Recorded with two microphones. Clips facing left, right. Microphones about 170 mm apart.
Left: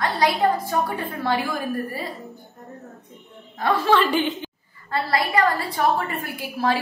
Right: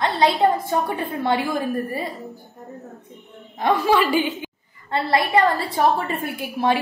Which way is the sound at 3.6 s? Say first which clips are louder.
Right 1 dB; 15° right (ahead or behind).